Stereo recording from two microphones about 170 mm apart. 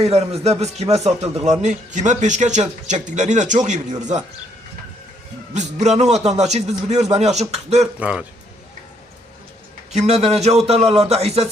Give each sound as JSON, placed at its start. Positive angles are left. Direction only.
{"t": 0.0, "sound": "a man's voice", "side_deg": -40}
{"t": 5.5, "sound": "a man's voice", "side_deg": -40}
{"t": 7.9, "sound": "a man's voice", "side_deg": -10}
{"t": 9.9, "sound": "a man's voice", "side_deg": -40}